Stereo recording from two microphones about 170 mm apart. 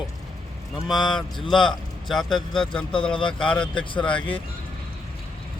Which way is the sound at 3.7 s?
30° left (ahead or behind).